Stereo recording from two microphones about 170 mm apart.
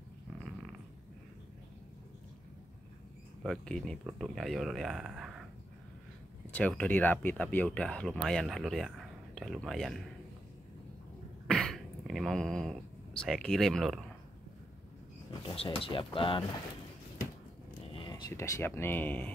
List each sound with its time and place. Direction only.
3.4 s speech: 5° left (ahead or behind)
6.5 s speech: 10° left (ahead or behind)
11.4 s throat clearing: 5° left (ahead or behind)
15.4 s speech: 35° left (ahead or behind)
17.9 s speech: 25° left (ahead or behind); by 19.3 s 10° left (ahead or behind)